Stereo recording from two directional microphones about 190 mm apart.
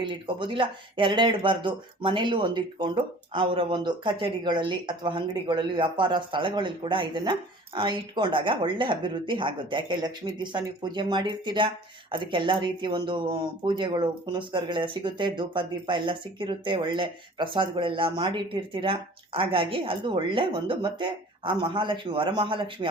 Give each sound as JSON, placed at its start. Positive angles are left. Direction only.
{"t": 0.0, "sound": "speech", "side_deg": -25}